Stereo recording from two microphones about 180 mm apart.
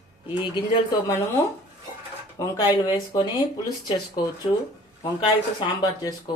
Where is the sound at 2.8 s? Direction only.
25° left (ahead or behind).